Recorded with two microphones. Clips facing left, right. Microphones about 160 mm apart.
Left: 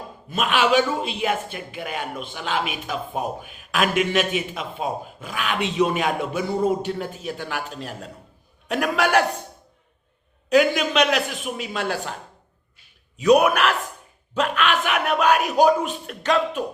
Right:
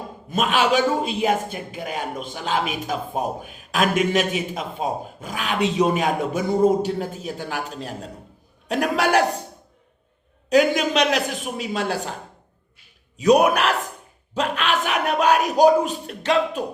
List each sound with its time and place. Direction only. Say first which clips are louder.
0.3 s speech: right 1 dB; 40° right (ahead or behind)
10.5 s speech: right 1 dB; 40° right (ahead or behind)
13.2 s speech: even; 35° right (ahead or behind)